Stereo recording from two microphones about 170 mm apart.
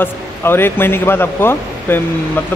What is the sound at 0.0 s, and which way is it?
Speech, 15° left (ahead or behind).